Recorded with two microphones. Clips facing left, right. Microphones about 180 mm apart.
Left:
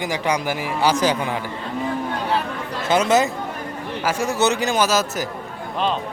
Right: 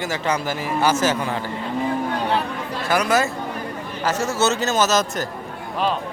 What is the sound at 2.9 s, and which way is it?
Speech, 20° left (ahead or behind).